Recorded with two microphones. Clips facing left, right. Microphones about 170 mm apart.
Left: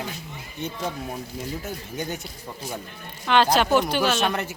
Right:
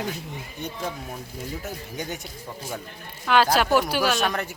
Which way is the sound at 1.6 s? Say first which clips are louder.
Left 1 dB; centre (ahead or behind).